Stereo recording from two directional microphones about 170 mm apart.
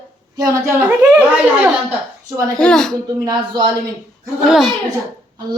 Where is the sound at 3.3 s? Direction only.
25° right (ahead or behind).